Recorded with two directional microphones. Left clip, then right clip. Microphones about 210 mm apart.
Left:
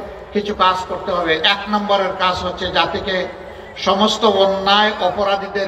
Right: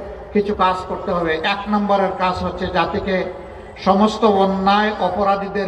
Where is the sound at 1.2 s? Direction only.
20° right (ahead or behind).